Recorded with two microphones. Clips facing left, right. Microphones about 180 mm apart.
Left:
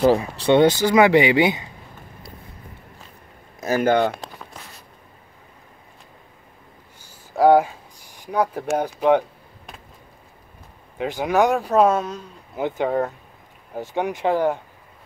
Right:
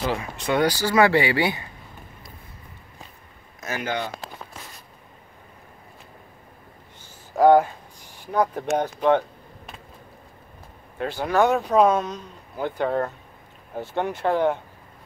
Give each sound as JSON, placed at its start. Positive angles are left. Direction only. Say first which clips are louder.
{"t": 0.0, "sound": "speech", "louder": "left 9 dB", "side_deg": 35}
{"t": 3.6, "sound": "speech", "louder": "left 10 dB", "side_deg": 45}
{"t": 7.0, "sound": "a sound", "louder": "left 1 dB", "side_deg": 10}
{"t": 11.0, "sound": "speech", "louder": "left 2 dB", "side_deg": 15}